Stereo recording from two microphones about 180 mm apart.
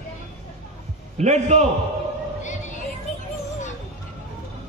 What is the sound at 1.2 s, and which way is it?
Speech, 40° right (ahead or behind).